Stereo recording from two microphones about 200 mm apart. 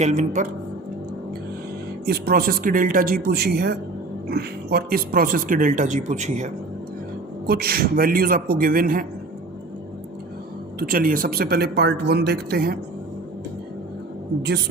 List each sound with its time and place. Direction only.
0.0 s speech: 35° right (ahead or behind)
2.0 s speech: 50° right (ahead or behind)
7.4 s speech: 50° right (ahead or behind)
10.8 s speech: 45° right (ahead or behind)